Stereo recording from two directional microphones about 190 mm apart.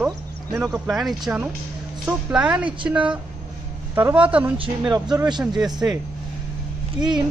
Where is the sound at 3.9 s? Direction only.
10° right (ahead or behind).